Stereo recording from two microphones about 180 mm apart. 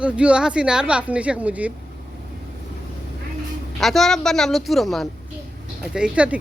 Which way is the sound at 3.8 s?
Centre (ahead or behind).